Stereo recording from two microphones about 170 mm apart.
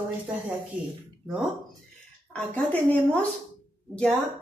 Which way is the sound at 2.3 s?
10° left (ahead or behind).